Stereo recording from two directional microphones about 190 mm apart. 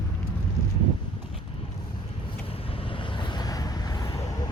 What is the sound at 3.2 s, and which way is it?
Vehicle, 20° left (ahead or behind).